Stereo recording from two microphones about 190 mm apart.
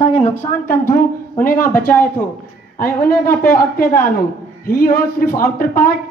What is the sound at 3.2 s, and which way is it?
A woman's voice, 50° left (ahead or behind).